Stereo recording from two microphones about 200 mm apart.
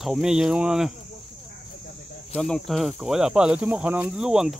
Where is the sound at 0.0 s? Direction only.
Centre (ahead or behind).